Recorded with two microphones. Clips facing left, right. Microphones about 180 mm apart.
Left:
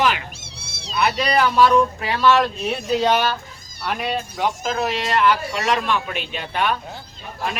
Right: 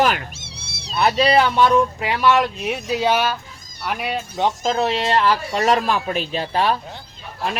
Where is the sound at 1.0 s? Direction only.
30° right (ahead or behind); by 4.1 s 10° right (ahead or behind).